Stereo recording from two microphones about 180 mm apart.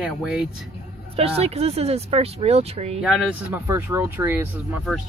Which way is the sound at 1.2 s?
35° right (ahead or behind).